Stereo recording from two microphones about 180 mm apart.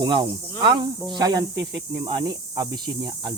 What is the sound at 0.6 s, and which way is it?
Cricket, 25° right (ahead or behind).